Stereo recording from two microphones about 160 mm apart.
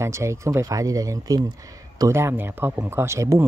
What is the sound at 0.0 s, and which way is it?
Speech, 20° right (ahead or behind).